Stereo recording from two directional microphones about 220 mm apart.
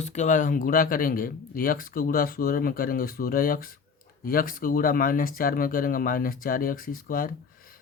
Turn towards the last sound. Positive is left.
turn(degrees=40)  # may be behind; listen again after turning